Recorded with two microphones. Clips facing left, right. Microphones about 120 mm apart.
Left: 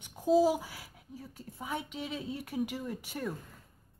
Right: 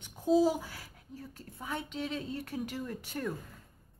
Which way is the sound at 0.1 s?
10° left (ahead or behind).